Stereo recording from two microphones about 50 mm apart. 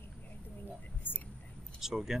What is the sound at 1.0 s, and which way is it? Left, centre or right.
Whispering, left.